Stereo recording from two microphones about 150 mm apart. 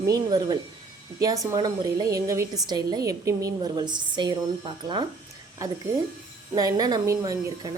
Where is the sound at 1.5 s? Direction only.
30° right (ahead or behind).